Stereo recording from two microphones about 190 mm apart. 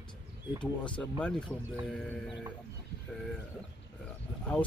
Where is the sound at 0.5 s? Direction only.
25° left (ahead or behind).